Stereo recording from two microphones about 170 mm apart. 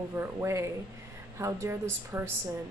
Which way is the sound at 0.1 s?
15° right (ahead or behind).